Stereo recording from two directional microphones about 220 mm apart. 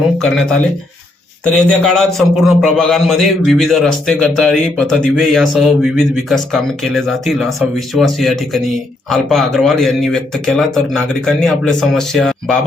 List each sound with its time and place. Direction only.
1.5 s a man's voice: 5° left (ahead or behind)